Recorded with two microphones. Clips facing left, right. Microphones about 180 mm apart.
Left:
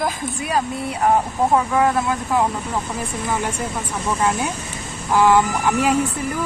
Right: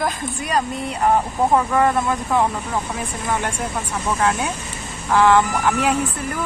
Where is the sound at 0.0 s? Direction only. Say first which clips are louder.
Even; 5° left (ahead or behind).